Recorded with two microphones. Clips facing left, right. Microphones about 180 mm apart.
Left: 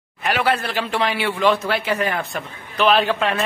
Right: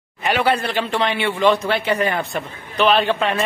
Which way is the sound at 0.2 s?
Centre (ahead or behind).